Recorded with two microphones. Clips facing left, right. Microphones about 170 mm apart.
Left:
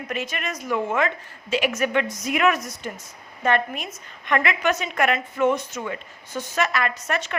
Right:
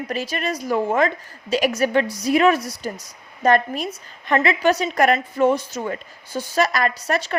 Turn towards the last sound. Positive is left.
turn(degrees=-35)  # may be behind; listen again after turning